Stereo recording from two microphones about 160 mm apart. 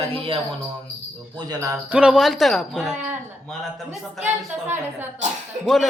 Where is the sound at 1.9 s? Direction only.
5° right (ahead or behind).